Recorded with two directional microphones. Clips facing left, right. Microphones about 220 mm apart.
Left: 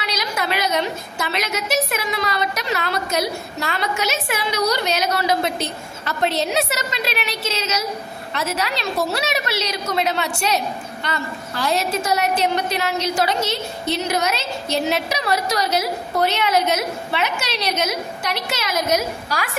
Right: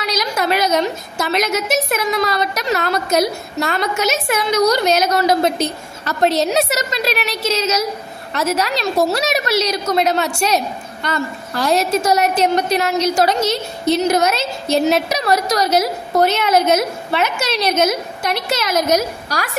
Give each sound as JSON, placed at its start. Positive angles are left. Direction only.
{"t": 0.0, "sound": "a woman's voice", "side_deg": -40}